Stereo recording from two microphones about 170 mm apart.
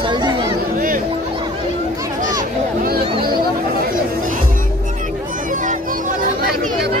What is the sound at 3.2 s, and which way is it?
Chatter, 60° right (ahead or behind).